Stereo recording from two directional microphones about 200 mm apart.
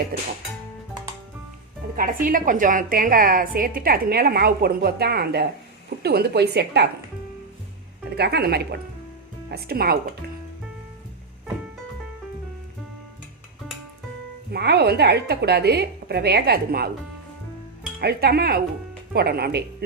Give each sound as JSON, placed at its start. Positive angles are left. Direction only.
{"t": 0.1, "sound": "a woman's voice", "side_deg": -50}
{"t": 2.0, "sound": "a woman's voice", "side_deg": -45}
{"t": 8.1, "sound": "a woman's voice", "side_deg": -55}
{"t": 14.5, "sound": "a woman's voice", "side_deg": -55}
{"t": 18.0, "sound": "a woman's voice", "side_deg": -50}